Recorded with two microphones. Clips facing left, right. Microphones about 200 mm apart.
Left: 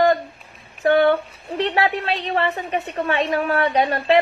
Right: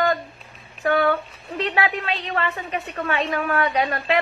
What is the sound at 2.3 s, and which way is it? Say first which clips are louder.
Speech: left 5 dB; 30° left (ahead or behind).